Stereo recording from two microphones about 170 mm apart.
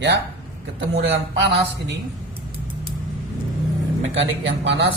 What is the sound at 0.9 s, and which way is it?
Speech, 90° right.